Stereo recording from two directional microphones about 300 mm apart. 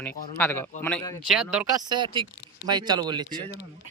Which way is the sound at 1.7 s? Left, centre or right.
Centre.